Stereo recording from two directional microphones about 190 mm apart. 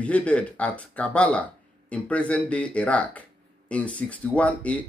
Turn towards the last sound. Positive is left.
turn(degrees=5)  # may be behind; listen again after turning